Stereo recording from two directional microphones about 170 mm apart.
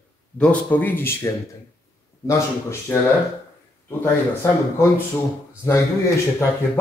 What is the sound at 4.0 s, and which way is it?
Speech, 15° left (ahead or behind).